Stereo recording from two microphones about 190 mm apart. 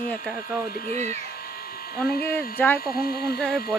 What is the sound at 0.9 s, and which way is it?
Speech, 35° right (ahead or behind).